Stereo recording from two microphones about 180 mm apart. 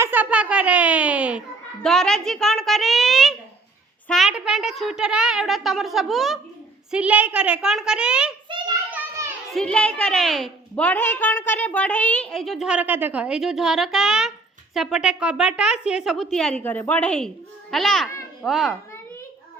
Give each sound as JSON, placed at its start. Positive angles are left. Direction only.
{"t": 0.0, "sound": "a child's voice", "side_deg": -10}
{"t": 8.4, "sound": "a sound", "side_deg": -25}
{"t": 8.9, "sound": "children playing", "side_deg": -15}
{"t": 9.5, "sound": "a woman's voice", "side_deg": 5}